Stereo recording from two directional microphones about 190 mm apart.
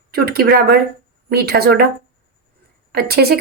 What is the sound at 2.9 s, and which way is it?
Speech, 55° right (ahead or behind).